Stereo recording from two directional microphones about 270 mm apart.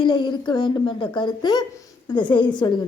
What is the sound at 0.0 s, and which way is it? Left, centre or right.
A woman's voice, centre.